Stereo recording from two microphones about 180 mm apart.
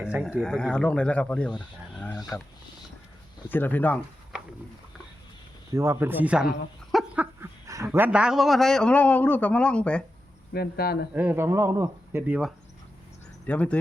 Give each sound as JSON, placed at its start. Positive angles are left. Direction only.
{"t": 0.0, "sound": "speech", "side_deg": -5}
{"t": 0.4, "sound": "a man's voice", "side_deg": 5}
{"t": 3.5, "sound": "speech", "side_deg": 10}
{"t": 4.3, "sound": "a sound", "side_deg": -5}
{"t": 5.7, "sound": "speech", "side_deg": -15}
{"t": 6.9, "sound": "a sound", "side_deg": -10}
{"t": 7.9, "sound": "a man's voice", "side_deg": -10}
{"t": 10.5, "sound": "speech", "side_deg": 60}
{"t": 11.1, "sound": "speech", "side_deg": -10}
{"t": 13.5, "sound": "speech", "side_deg": 5}